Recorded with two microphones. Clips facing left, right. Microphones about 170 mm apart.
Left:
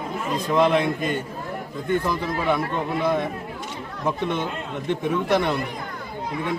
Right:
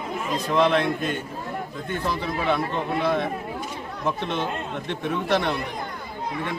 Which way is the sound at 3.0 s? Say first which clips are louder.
Left 1 dB; 15° left (ahead or behind).